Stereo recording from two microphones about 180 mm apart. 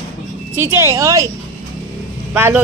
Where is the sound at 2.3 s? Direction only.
10° right (ahead or behind).